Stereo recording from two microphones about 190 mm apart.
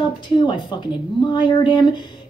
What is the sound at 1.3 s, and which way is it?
Speech, 25° left (ahead or behind).